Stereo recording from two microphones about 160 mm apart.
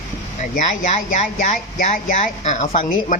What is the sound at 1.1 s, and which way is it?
Speech, 55° left (ahead or behind).